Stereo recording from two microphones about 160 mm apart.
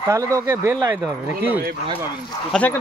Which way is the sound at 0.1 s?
20° right (ahead or behind).